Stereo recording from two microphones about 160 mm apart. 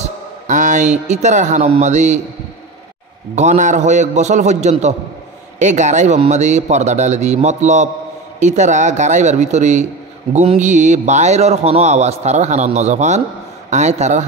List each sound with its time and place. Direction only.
0.0 s speech: 50° right (ahead or behind)
3.3 s a man's voice: 50° right (ahead or behind)